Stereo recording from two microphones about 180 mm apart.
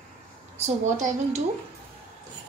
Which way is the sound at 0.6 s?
40° right (ahead or behind).